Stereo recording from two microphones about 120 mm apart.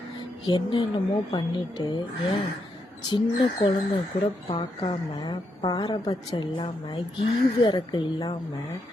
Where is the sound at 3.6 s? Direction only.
45° left (ahead or behind).